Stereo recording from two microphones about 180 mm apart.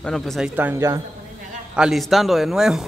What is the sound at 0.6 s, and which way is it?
Speech, 15° right (ahead or behind).